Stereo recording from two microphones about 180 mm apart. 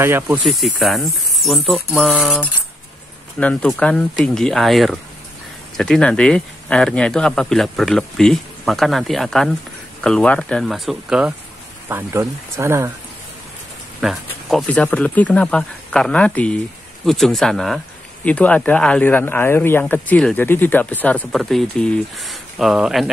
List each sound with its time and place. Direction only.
0.0 s speech: 10° right (ahead or behind)
0.5 s speech: centre (ahead or behind)
11.9 s speech: 15° right (ahead or behind)
14.0 s speech: centre (ahead or behind)